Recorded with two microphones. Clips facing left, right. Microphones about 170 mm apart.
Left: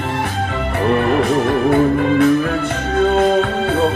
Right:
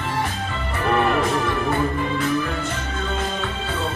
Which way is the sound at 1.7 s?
65° left (ahead or behind).